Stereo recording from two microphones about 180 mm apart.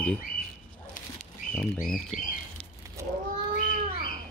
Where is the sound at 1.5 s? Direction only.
5° left (ahead or behind).